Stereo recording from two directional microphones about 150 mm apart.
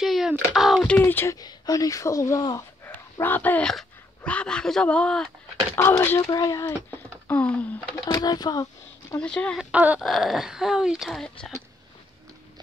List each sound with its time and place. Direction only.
0.0 s a sound: centre (ahead or behind)
0.9 s speech: 15° left (ahead or behind)
2.9 s speech: 10° left (ahead or behind)
5.8 s speech: 15° left (ahead or behind)
8.0 s speech: 25° left (ahead or behind)
9.2 s speech: 5° left (ahead or behind)
9.7 s a sound: 10° right (ahead or behind)
10.0 s speech: centre (ahead or behind)